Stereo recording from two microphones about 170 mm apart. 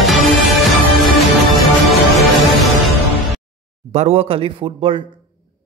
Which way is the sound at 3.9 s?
35° right (ahead or behind).